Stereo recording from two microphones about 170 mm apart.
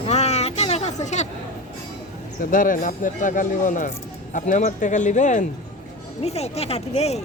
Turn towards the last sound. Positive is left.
turn(degrees=40)  # may be behind; listen again after turning